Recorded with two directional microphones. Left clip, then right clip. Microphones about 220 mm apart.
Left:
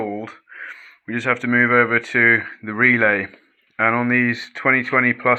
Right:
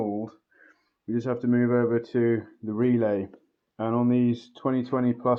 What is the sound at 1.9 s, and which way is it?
Speech, 20° left (ahead or behind).